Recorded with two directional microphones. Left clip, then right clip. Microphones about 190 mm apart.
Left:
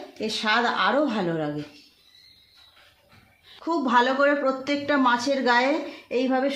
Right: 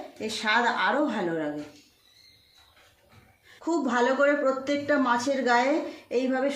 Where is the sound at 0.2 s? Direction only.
45° left (ahead or behind).